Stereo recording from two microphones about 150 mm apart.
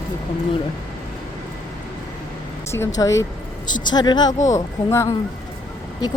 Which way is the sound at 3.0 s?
20° left (ahead or behind).